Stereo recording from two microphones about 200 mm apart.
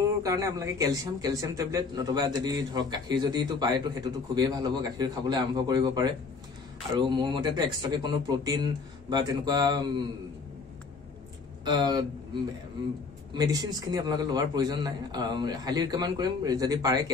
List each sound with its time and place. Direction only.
0.2 s speech: 15° right (ahead or behind)
11.6 s speech: 20° right (ahead or behind)
13.3 s speech: 20° right (ahead or behind)